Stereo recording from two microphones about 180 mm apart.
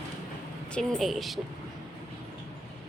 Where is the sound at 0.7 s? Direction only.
Centre (ahead or behind).